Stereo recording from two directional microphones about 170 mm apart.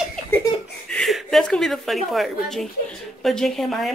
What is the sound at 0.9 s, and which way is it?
A woman's voice, centre (ahead or behind).